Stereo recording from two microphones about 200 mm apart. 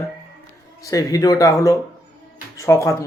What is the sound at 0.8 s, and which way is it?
Speech, 15° left (ahead or behind).